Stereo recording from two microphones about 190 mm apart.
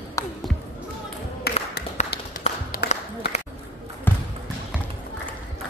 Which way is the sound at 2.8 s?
60° left (ahead or behind).